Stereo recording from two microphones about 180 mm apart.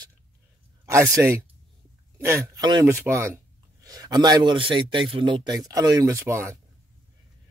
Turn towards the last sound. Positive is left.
turn(degrees=-15)  # may be behind; listen again after turning